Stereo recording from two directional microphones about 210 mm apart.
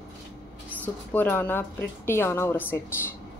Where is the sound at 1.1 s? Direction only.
10° left (ahead or behind).